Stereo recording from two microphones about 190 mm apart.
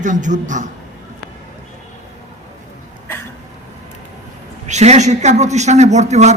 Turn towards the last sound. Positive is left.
turn(degrees=-35)  # may be behind; listen again after turning